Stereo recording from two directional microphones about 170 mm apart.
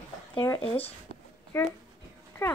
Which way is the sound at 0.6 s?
35° left (ahead or behind).